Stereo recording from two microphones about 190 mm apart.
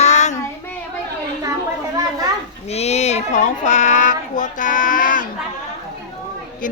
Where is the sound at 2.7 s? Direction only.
35° left (ahead or behind).